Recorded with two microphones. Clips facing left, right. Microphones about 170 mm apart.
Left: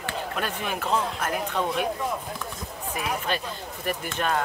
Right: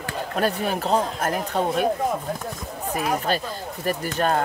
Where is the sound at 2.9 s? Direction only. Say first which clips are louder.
Right 5 dB; 40° right (ahead or behind).